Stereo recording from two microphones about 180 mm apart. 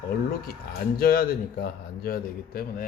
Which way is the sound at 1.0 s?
55° left (ahead or behind).